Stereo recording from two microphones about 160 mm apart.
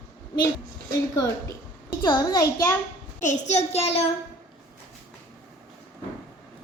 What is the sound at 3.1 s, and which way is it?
Speech, 50° left (ahead or behind).